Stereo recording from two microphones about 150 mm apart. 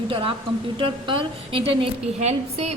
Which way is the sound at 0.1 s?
35° right (ahead or behind).